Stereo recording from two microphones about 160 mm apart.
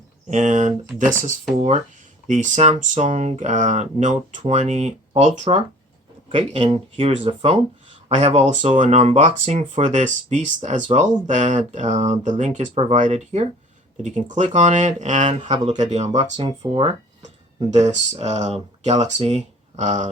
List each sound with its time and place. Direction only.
0.3 s speech: 50° right (ahead or behind)
2.2 s speech: 50° right (ahead or behind)
6.2 s speech: 35° right (ahead or behind)